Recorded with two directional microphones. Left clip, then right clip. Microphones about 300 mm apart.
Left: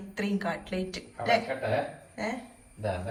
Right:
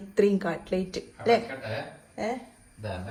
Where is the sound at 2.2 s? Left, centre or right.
Right.